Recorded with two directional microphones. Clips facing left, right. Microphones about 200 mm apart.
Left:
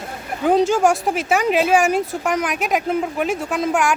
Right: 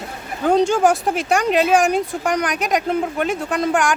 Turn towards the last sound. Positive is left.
turn(degrees=0)  # may be behind; listen again after turning